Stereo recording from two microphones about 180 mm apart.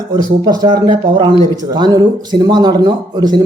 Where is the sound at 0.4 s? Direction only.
20° right (ahead or behind).